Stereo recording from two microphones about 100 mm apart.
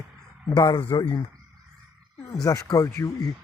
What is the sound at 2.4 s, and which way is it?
Speech, 35° left (ahead or behind).